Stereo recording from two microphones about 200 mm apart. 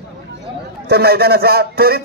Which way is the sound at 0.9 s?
50° right (ahead or behind).